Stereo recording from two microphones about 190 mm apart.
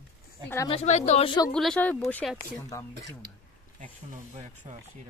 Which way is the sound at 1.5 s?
5° left (ahead or behind).